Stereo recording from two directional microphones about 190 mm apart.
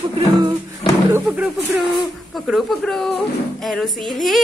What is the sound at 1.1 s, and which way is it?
Speech, 10° right (ahead or behind).